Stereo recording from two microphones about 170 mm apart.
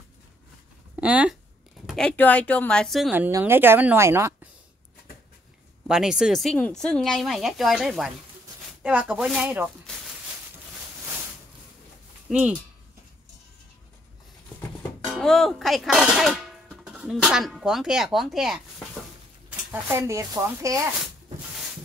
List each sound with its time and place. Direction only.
0.9 s speech: 10° right (ahead or behind)
1.9 s speech: 5° left (ahead or behind)
3.1 s speech: 15° right (ahead or behind)
5.9 s speech: 5° right (ahead or behind)
12.3 s speech: 5° right (ahead or behind)
15.0 s speech: centre (ahead or behind)
19.7 s speech: 15° right (ahead or behind)